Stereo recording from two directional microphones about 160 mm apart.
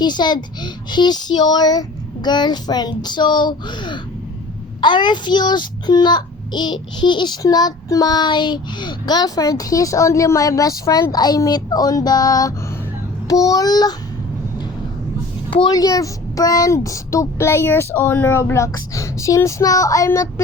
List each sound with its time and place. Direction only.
0.0 s a child's voice: 25° left (ahead or behind)
15.5 s a child's voice: 25° left (ahead or behind)